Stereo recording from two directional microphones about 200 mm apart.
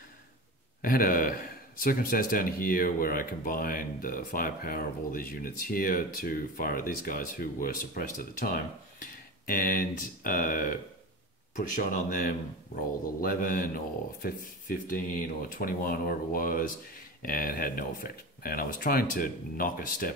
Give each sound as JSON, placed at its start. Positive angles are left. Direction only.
{"t": 0.8, "sound": "a man's voice", "side_deg": 45}